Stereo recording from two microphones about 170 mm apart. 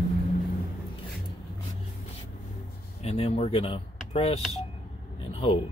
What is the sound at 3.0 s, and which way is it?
Speech, 35° left (ahead or behind).